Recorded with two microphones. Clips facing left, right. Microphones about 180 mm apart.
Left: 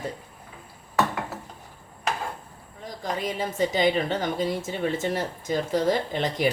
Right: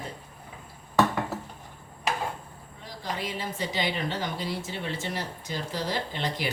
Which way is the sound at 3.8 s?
45° left (ahead or behind).